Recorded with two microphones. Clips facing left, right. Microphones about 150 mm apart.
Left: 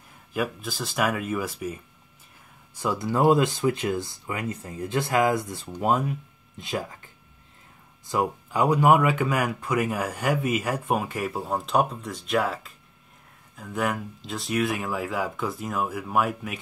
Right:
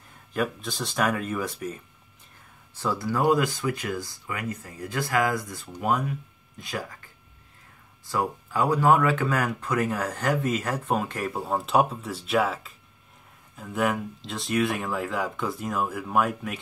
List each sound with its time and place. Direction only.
0.3 s speech: 5° left (ahead or behind)
2.9 s speech: 25° left (ahead or behind)
8.1 s speech: 20° left (ahead or behind); by 16.5 s 5° left (ahead or behind)